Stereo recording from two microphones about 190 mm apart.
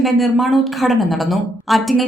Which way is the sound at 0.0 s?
Centre (ahead or behind).